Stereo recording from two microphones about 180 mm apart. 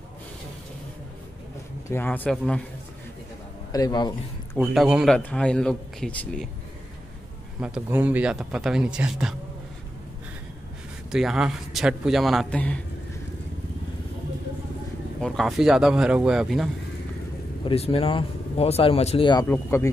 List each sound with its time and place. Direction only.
1.9 s a man's voice: 10° left (ahead or behind)
3.7 s a man's voice: 20° left (ahead or behind)
4.6 s speech: 5° right (ahead or behind)
7.6 s speech: 10° right (ahead or behind)
11.1 s speech: 5° right (ahead or behind)
15.1 s speech: centre (ahead or behind)
17.6 s speech: 35° left (ahead or behind)
19.4 s a man's voice: 10° left (ahead or behind)